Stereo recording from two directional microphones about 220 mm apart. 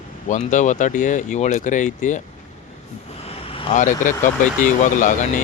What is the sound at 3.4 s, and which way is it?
Speech, 25° left (ahead or behind).